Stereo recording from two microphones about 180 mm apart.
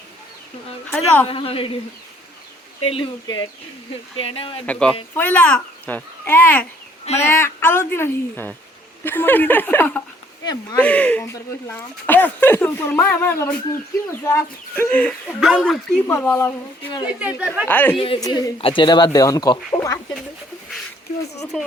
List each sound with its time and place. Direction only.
0.9 s speech: 10° left (ahead or behind)
1.3 s a woman's voice: 30° left (ahead or behind)
2.8 s a woman's voice: 30° left (ahead or behind)
4.6 s speech: 10° left (ahead or behind)
7.0 s speech: 35° left (ahead or behind)
7.3 s speech: 15° left (ahead or behind)
10.4 s speech: 20° left (ahead or behind)
10.8 s speech: 5° left (ahead or behind)
15.4 s speech: 5° right (ahead or behind)
16.1 s speech: 10° left (ahead or behind)
17.1 s speech: 5° right (ahead or behind)
17.7 s speech: 10° left (ahead or behind)
17.9 s speech: 30° left (ahead or behind)